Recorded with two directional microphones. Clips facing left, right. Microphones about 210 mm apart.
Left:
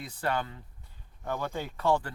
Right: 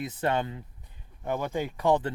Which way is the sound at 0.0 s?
20° right (ahead or behind).